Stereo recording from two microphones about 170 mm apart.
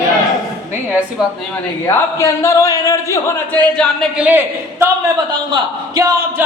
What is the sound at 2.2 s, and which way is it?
Speech, 20° left (ahead or behind).